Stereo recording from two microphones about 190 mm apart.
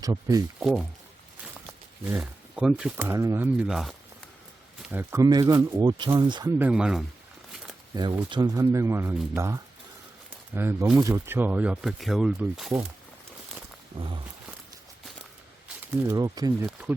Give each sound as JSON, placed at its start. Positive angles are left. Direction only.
{"t": 0.0, "sound": "speech", "side_deg": -20}
{"t": 0.6, "sound": "speech", "side_deg": 0}
{"t": 2.0, "sound": "speech", "side_deg": -10}
{"t": 6.6, "sound": "speech", "side_deg": -5}
{"t": 7.9, "sound": "speech", "side_deg": -25}
{"t": 15.8, "sound": "speech", "side_deg": -15}